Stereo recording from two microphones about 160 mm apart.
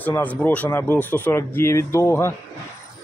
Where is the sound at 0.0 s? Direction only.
10° left (ahead or behind).